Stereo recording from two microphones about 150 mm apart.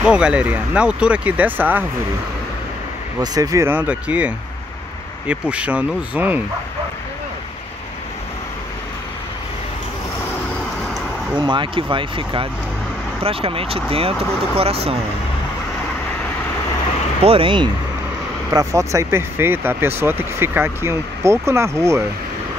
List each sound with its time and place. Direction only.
0.0 s speech: 5° right (ahead or behind)
3.2 s speech: 25° right (ahead or behind)
5.3 s speech: 10° right (ahead or behind)
11.3 s speech: 30° right (ahead or behind)
17.2 s speech: 40° right (ahead or behind)
18.5 s speech: 20° right (ahead or behind)